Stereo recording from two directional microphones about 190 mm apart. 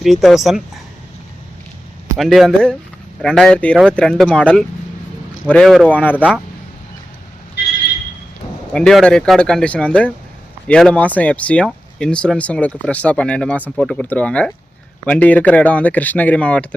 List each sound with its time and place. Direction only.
0.0 s speech: centre (ahead or behind)
2.1 s speech: centre (ahead or behind)
8.7 s speech: centre (ahead or behind)